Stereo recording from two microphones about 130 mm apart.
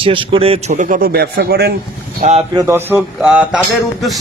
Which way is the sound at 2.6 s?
15° right (ahead or behind).